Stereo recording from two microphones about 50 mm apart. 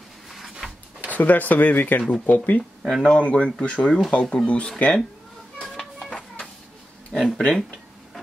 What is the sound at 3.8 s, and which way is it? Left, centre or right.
Speech, centre.